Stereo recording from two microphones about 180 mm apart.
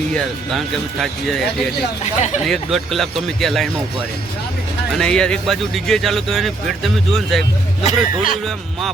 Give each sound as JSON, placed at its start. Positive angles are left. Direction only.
{"t": 0.1, "sound": "speech", "side_deg": 0}
{"t": 4.9, "sound": "speech", "side_deg": 5}
{"t": 7.9, "sound": "speech", "side_deg": 50}